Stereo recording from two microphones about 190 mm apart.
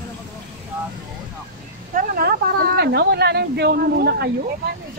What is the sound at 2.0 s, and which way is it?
A woman's voice, 50° right (ahead or behind).